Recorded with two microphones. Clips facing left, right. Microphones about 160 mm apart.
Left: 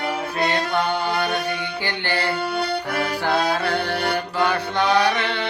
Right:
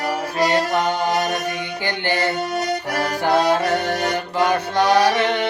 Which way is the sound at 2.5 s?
45° right (ahead or behind).